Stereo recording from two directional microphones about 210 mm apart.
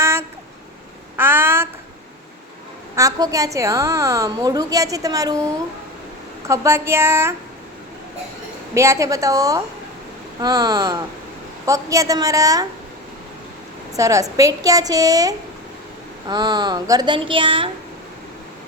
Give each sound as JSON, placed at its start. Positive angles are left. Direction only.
{"t": 0.0, "sound": "a sound", "side_deg": -10}
{"t": 2.9, "sound": "a woman's voice", "side_deg": -15}
{"t": 6.5, "sound": "a woman's voice", "side_deg": -15}
{"t": 8.7, "sound": "a woman's voice", "side_deg": -15}
{"t": 13.9, "sound": "a woman's voice", "side_deg": -15}